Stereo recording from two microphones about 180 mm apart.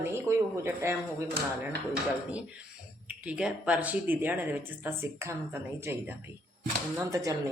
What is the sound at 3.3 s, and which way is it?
Speech, 5° right (ahead or behind).